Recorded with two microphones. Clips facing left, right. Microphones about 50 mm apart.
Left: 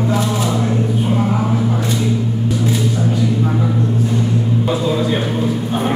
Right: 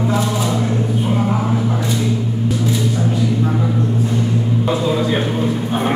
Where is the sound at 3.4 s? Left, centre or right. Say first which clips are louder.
Left 1 dB; centre.